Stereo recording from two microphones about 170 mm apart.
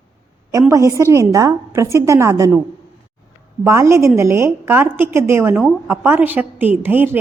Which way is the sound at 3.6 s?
15° right (ahead or behind).